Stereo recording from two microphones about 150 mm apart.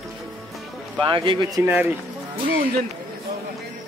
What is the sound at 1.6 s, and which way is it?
Speech, 10° right (ahead or behind).